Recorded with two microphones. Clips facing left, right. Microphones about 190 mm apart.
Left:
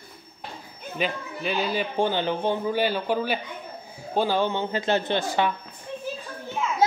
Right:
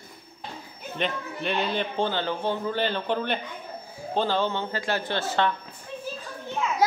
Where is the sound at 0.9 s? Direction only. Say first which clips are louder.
Left 1 dB; 5° left (ahead or behind).